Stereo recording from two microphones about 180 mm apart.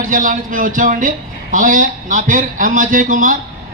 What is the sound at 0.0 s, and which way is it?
Speech, 50° right (ahead or behind).